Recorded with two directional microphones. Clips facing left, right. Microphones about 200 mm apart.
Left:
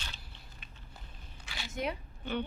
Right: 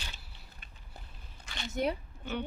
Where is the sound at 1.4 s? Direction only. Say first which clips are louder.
Right 3 dB; 5° left (ahead or behind).